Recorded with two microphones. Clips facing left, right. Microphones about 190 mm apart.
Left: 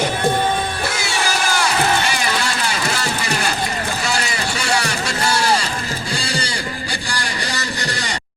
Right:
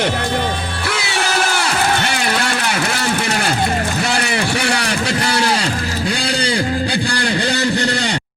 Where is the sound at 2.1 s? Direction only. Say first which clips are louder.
Right 2 dB; 60° right (ahead or behind).